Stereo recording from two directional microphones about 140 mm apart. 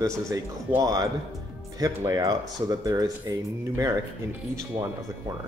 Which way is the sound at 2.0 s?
25° right (ahead or behind).